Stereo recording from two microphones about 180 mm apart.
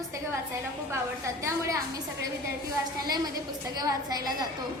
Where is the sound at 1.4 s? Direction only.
15° right (ahead or behind).